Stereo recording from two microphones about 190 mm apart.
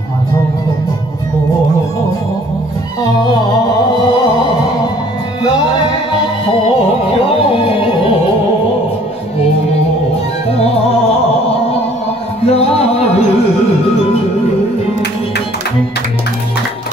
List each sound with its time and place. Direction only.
7.2 s music: 30° left (ahead or behind)
10.5 s music: 30° left (ahead or behind)
12.4 s music: 30° left (ahead or behind)